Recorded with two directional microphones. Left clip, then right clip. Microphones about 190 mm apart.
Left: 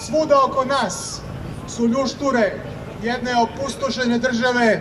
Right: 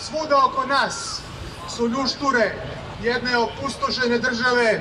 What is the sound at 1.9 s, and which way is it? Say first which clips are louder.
A man's voice: left 1 dB; 30° left (ahead or behind).